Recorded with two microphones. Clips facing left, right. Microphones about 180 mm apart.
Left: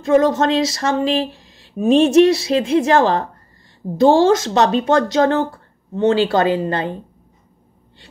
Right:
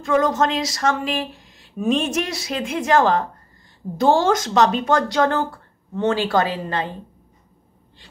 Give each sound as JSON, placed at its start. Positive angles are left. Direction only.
{"t": 0.1, "sound": "speech", "side_deg": 30}